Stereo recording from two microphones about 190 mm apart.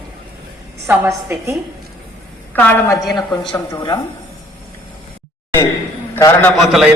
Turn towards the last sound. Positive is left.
turn(degrees=0)  # may be behind; listen again after turning